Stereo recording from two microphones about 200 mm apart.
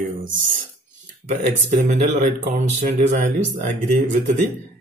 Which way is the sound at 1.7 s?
35° right (ahead or behind).